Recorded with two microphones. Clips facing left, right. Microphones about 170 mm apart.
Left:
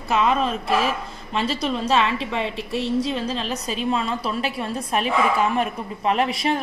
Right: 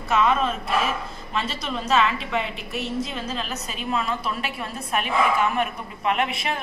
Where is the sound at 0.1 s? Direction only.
35° left (ahead or behind).